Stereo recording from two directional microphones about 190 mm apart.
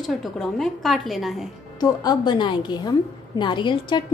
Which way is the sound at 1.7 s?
20° left (ahead or behind).